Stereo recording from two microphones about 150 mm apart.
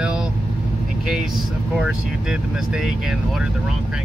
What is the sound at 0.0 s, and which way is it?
Vehicle, 5° right (ahead or behind).